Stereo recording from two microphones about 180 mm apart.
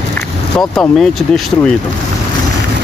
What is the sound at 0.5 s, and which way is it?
Speech, 5° left (ahead or behind).